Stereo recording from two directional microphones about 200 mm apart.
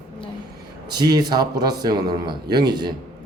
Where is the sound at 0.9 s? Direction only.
20° right (ahead or behind).